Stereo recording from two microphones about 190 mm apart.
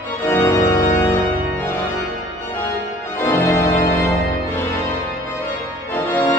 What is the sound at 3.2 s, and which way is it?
Organ, 10° left (ahead or behind).